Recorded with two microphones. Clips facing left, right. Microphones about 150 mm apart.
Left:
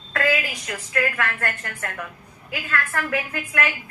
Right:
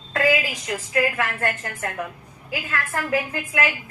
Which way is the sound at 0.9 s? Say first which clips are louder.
Right 2 dB; 25° right (ahead or behind).